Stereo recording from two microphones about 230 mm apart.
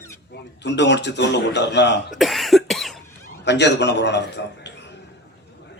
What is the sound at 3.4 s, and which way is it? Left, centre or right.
Speech, left.